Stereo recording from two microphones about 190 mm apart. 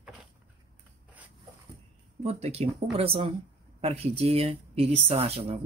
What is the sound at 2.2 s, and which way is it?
Speech, 35° right (ahead or behind).